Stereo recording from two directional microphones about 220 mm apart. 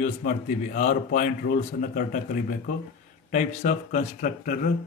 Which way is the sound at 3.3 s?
35° left (ahead or behind).